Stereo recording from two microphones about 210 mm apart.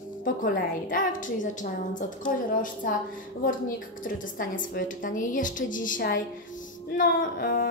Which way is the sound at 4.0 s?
40° left (ahead or behind).